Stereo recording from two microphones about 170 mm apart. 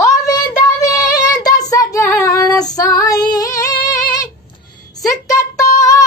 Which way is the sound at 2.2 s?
20° left (ahead or behind).